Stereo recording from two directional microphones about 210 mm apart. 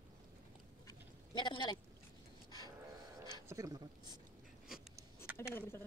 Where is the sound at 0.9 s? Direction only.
20° left (ahead or behind).